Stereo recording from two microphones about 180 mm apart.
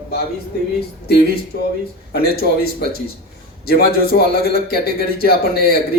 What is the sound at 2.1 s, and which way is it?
Speech, 60° left (ahead or behind).